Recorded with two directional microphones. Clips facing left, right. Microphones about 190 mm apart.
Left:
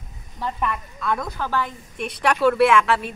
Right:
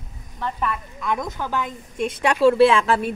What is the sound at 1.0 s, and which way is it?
A woman's voice, 15° right (ahead or behind).